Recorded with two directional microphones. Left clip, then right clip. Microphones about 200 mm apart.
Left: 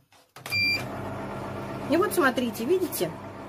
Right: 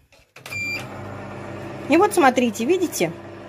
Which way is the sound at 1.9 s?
20° right (ahead or behind).